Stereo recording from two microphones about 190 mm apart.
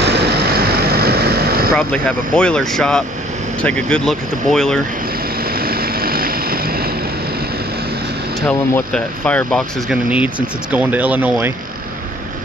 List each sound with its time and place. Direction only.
0.0 s vehicle: 60° right (ahead or behind)
1.8 s speech: 5° left (ahead or behind)
5.4 s vehicle: 50° right (ahead or behind)
8.4 s speech: 5° left (ahead or behind)
9.8 s speech: 5° right (ahead or behind)